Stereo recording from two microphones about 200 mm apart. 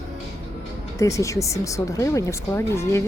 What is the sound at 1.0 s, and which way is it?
Speech, 15° left (ahead or behind).